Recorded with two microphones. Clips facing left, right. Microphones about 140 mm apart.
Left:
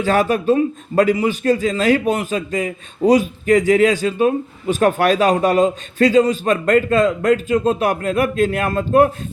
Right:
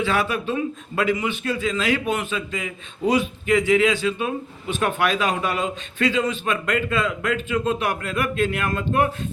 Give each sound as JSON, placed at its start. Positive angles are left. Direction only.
{"t": 0.0, "sound": "a man's voice", "side_deg": 40}